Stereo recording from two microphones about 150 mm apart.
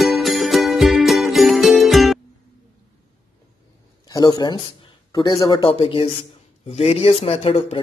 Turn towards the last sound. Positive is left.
turn(degrees=40)  # may be behind; listen again after turning